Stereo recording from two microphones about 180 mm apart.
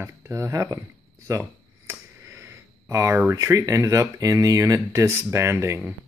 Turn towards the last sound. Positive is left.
turn(degrees=-15)  # may be behind; listen again after turning